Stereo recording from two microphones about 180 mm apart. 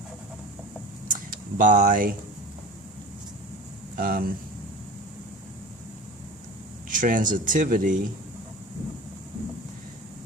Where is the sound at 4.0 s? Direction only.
55° right (ahead or behind).